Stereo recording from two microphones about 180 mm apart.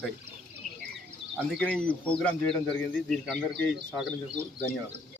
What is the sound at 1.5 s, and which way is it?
Speech, 5° left (ahead or behind).